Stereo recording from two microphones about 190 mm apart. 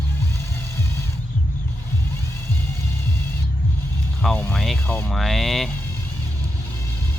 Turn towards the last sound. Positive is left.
turn(degrees=0)  # may be behind; listen again after turning